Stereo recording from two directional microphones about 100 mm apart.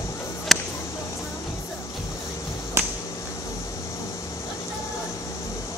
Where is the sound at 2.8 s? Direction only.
25° right (ahead or behind).